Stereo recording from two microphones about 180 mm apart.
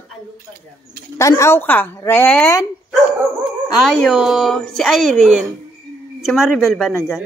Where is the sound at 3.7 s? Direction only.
Centre (ahead or behind).